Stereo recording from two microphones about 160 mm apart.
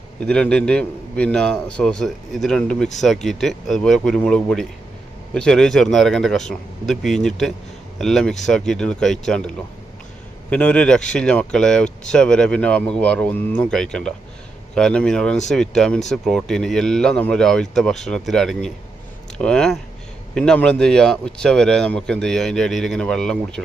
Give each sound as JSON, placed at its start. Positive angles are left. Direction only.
{"t": 0.2, "sound": "a man's voice", "side_deg": 5}